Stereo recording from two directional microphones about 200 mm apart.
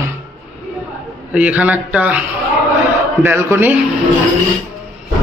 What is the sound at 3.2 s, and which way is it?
Speech, 10° right (ahead or behind).